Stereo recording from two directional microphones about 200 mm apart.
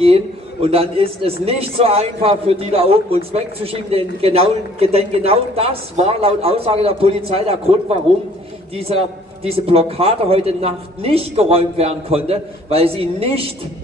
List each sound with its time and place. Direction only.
0.0 s a man's voice: 30° right (ahead or behind)